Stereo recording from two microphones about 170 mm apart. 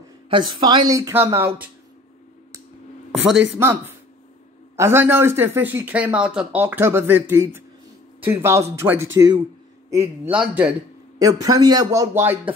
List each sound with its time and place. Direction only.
0.3 s speech: 25° right (ahead or behind)
3.1 s a sound: 5° right (ahead or behind)
3.5 s speech: 15° right (ahead or behind)
10.3 s speech: 10° right (ahead or behind)
11.1 s speech: 20° right (ahead or behind)